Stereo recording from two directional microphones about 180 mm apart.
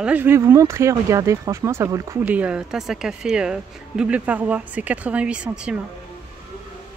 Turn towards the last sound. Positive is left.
turn(degrees=-5)  # may be behind; listen again after turning